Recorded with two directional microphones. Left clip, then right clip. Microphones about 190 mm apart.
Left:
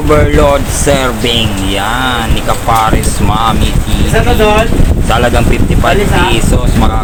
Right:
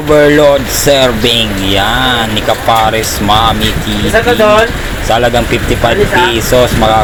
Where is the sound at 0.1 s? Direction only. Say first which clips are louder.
Right 3 dB; centre (ahead or behind).